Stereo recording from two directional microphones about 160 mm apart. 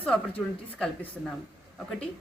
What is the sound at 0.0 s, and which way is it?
Speech, 5° left (ahead or behind).